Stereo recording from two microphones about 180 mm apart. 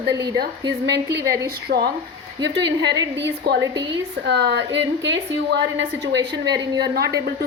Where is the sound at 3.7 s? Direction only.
20° right (ahead or behind).